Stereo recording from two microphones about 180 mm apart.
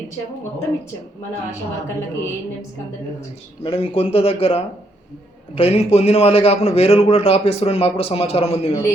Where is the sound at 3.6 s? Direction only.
30° left (ahead or behind).